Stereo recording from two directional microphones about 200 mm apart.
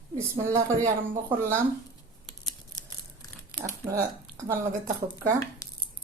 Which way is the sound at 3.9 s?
15° right (ahead or behind).